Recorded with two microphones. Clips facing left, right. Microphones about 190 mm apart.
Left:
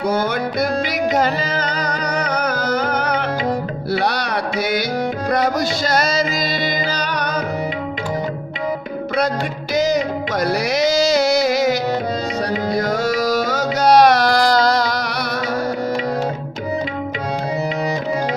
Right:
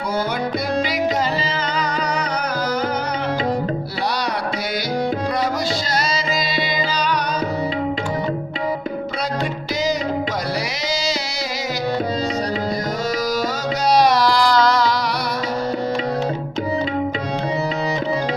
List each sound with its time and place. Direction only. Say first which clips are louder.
1.1 s music: left 3 dB; 45° left (ahead or behind)
5.9 s music: left 4 dB; 45° left (ahead or behind)
10.8 s music: left 9 dB; 45° left (ahead or behind)
12.7 s music: left 4 dB; 55° left (ahead or behind)